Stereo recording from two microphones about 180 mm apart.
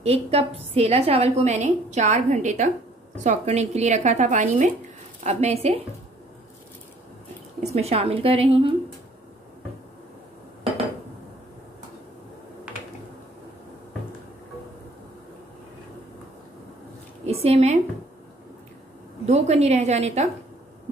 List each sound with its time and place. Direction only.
0.0 s a woman's voice: 35° right (ahead or behind)
7.7 s a woman's voice: 35° right (ahead or behind)
17.3 s a woman's voice: 35° right (ahead or behind)
19.2 s a woman's voice: 35° right (ahead or behind)